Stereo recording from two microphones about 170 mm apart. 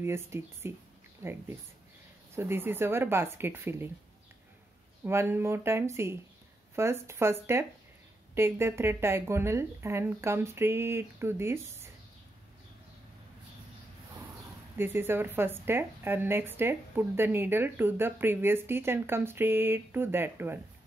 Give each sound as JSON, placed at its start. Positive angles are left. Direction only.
{"t": 0.0, "sound": "a woman's voice", "side_deg": -15}
{"t": 5.0, "sound": "a woman's voice", "side_deg": -15}
{"t": 8.4, "sound": "a woman's voice", "side_deg": -15}
{"t": 14.8, "sound": "a woman's voice", "side_deg": -15}